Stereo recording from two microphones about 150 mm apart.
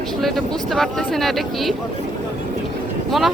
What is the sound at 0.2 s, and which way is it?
Speech, centre (ahead or behind).